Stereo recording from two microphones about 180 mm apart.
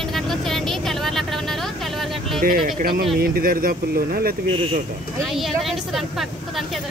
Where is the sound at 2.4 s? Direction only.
55° right (ahead or behind).